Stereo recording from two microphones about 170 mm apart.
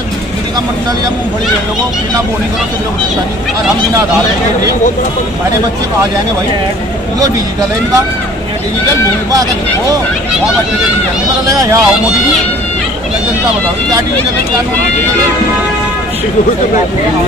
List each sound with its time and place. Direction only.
11.4 s speech: 20° right (ahead or behind)